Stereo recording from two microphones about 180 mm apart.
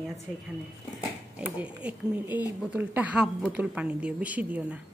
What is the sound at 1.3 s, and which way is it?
Speech, 10° right (ahead or behind).